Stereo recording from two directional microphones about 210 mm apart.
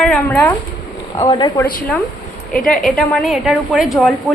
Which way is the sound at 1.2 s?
20° left (ahead or behind).